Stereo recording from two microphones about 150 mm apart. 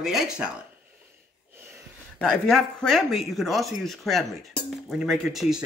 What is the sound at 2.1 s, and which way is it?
Speech, 5° left (ahead or behind).